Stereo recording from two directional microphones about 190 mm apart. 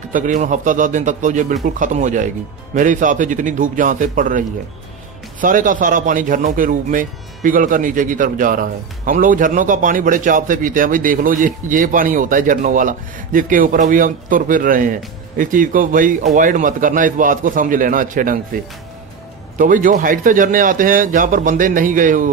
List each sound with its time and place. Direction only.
0.1 s speech: 45° right (ahead or behind)
19.6 s speech: 45° right (ahead or behind)